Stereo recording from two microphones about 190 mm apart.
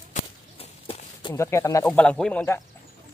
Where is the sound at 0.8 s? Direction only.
25° left (ahead or behind).